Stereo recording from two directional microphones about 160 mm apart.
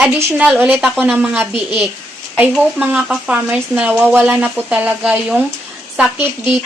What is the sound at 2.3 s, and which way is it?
Speech, 5° right (ahead or behind).